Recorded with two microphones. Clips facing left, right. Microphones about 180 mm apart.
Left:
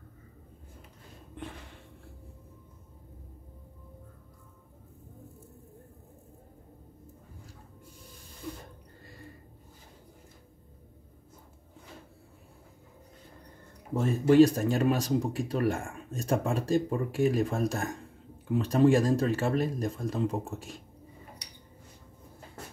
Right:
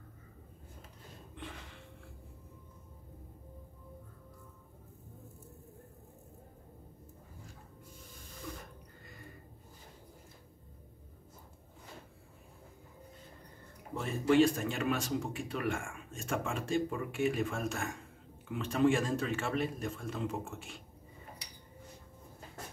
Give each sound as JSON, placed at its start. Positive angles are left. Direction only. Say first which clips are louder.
{"t": 13.9, "sound": "speech", "louder": "left 7 dB", "side_deg": 45}